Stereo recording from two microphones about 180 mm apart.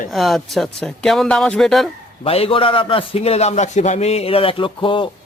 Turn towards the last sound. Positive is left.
turn(degrees=30)  # may be behind; listen again after turning